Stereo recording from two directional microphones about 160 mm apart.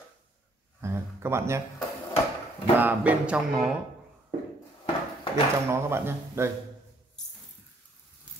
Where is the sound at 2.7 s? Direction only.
10° right (ahead or behind).